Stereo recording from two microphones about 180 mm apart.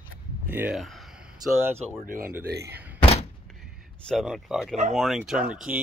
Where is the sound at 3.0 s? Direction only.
35° left (ahead or behind).